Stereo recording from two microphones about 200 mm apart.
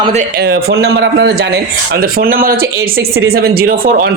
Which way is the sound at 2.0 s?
45° right (ahead or behind).